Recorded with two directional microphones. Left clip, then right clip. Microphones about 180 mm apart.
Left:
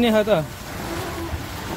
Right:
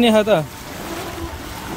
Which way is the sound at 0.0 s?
30° right (ahead or behind).